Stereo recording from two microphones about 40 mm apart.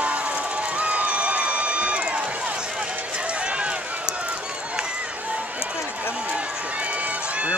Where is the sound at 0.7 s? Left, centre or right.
Right.